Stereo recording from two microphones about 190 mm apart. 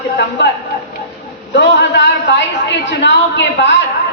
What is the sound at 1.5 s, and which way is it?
A woman's voice, 65° left (ahead or behind).